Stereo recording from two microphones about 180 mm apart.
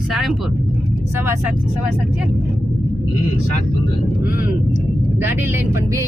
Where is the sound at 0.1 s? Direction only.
5° right (ahead or behind).